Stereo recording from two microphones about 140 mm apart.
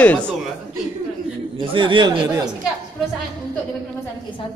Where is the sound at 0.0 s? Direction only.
10° left (ahead or behind).